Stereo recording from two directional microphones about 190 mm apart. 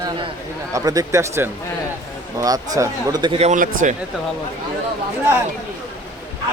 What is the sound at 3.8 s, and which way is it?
Speech, 45° right (ahead or behind).